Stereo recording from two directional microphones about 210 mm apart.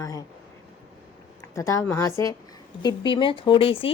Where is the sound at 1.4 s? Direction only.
15° left (ahead or behind).